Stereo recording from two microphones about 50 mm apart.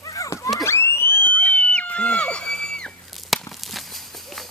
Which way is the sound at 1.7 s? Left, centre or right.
Left.